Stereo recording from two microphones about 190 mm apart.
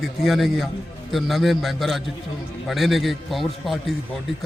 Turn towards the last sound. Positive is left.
turn(degrees=0)  # may be behind; listen again after turning